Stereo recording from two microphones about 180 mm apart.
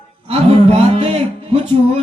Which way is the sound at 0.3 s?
35° right (ahead or behind).